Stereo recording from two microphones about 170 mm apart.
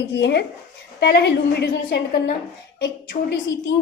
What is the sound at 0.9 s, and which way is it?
A woman's voice, 75° left (ahead or behind).